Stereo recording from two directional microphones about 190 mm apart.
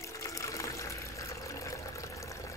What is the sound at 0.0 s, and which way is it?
Water, 15° left (ahead or behind).